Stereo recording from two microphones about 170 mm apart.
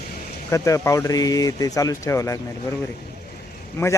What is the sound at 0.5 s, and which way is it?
A man's voice, 20° left (ahead or behind).